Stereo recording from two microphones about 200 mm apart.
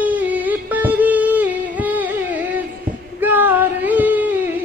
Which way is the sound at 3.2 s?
10° right (ahead or behind).